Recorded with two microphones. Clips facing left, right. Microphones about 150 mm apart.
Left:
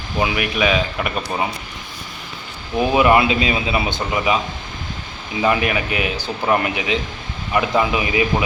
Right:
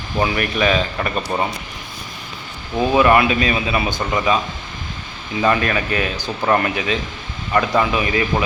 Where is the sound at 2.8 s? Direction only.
20° left (ahead or behind).